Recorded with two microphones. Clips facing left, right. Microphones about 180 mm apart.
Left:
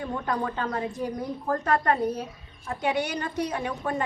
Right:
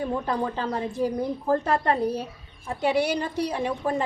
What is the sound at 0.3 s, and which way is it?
A woman's voice, 30° right (ahead or behind).